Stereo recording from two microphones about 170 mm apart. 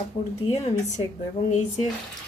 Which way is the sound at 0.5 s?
40° left (ahead or behind).